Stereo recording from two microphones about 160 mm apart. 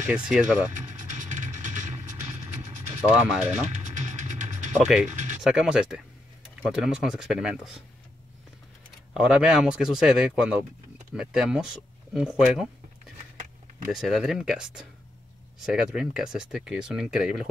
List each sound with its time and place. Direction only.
0.3 s speech: 5° right (ahead or behind)
0.9 s vehicle: 50° right (ahead or behind)
3.1 s speech: 5° right (ahead or behind)
3.8 s music: 50° right (ahead or behind)
4.7 s speech: 5° right (ahead or behind)
5.1 s a sound: 50° right (ahead or behind)
5.4 s speech: 5° right (ahead or behind)
9.1 s speech: 5° right (ahead or behind)
13.9 s speech: centre (ahead or behind)